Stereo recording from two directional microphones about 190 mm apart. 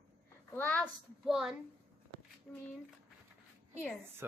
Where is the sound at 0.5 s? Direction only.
10° left (ahead or behind).